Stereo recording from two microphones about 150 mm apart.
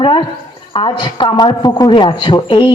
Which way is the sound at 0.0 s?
35° left (ahead or behind).